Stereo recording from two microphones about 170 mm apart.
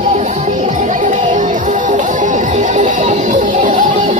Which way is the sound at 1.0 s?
45° right (ahead or behind).